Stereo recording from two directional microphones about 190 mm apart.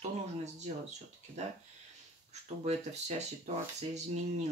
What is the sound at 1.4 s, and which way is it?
Speech, 35° right (ahead or behind).